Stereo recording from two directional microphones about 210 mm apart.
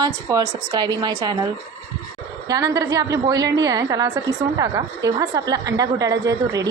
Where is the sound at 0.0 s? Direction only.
20° right (ahead or behind).